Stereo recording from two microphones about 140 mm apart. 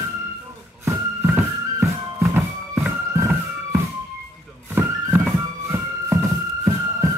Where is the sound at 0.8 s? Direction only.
15° right (ahead or behind).